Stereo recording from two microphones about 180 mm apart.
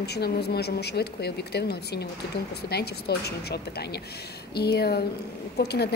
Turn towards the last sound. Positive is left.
turn(degrees=65)  # may be behind; listen again after turning